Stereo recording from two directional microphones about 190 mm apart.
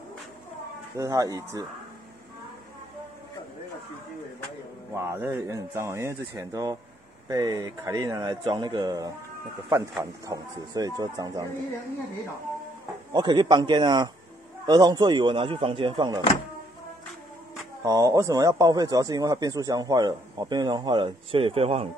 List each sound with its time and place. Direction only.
0.9 s speech: 15° right (ahead or behind)
4.9 s speech: 15° right (ahead or behind)
10.2 s speech: 20° right (ahead or behind)
13.1 s speech: 25° right (ahead or behind)
17.8 s speech: 20° right (ahead or behind)